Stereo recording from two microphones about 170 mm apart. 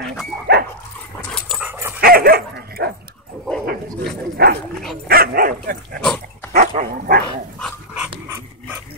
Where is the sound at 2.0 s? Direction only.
60° right (ahead or behind).